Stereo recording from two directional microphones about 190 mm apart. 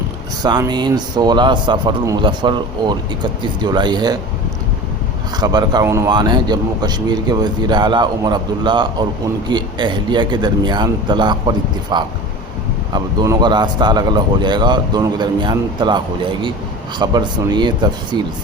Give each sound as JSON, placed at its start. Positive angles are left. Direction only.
{"t": 0.4, "sound": "a man's voice", "side_deg": -20}
{"t": 5.4, "sound": "a man's voice", "side_deg": -20}